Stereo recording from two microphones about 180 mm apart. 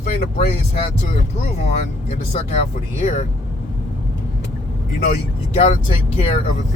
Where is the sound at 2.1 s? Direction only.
35° left (ahead or behind).